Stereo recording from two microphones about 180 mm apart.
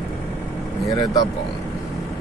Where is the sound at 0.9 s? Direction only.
20° left (ahead or behind).